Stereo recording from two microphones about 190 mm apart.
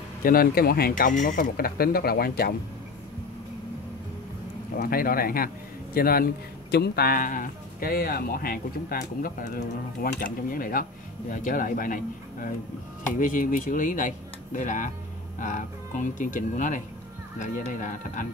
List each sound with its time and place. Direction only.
0.2 s speech: 50° left (ahead or behind)
4.7 s speech: 50° left (ahead or behind)